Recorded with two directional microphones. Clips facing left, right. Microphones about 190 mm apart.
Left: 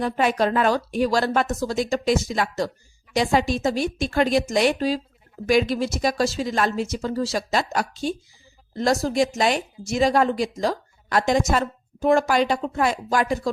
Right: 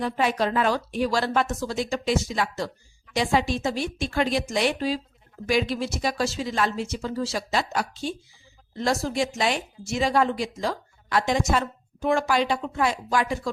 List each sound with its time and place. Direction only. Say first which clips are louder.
0.0 s speech: left 3 dB; 50° left (ahead or behind)